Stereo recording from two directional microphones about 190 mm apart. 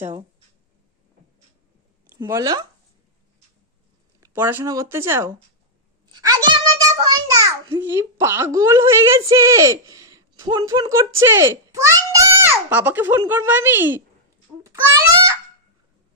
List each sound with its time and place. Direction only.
2.1 s speech: 15° right (ahead or behind)
4.2 s a child's voice: 10° right (ahead or behind)